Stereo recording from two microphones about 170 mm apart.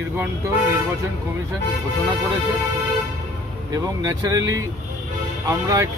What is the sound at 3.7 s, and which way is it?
Speech, 20° right (ahead or behind).